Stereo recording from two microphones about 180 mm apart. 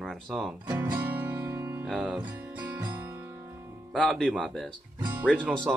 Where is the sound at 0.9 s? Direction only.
10° right (ahead or behind).